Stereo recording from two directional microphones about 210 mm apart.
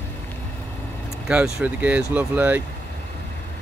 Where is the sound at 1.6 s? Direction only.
5° right (ahead or behind).